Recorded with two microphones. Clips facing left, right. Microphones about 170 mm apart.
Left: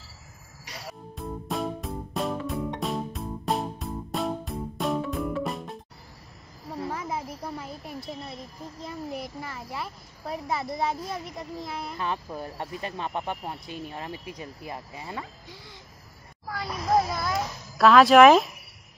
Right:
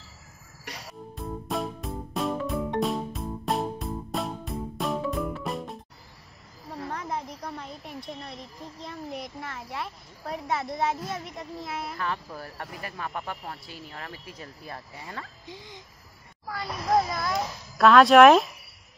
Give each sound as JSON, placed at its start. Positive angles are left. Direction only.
{"t": 1.1, "sound": "music", "side_deg": 0}
{"t": 6.8, "sound": "a woman's voice", "side_deg": 5}
{"t": 12.0, "sound": "speech", "side_deg": 20}
{"t": 15.4, "sound": "a sound", "side_deg": -20}
{"t": 16.4, "sound": "a child's voice", "side_deg": 0}